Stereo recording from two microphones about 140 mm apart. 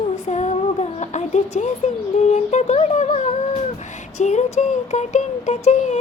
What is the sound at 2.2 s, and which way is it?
Music, 55° left (ahead or behind).